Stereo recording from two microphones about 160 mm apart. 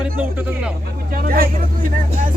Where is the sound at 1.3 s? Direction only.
65° right (ahead or behind).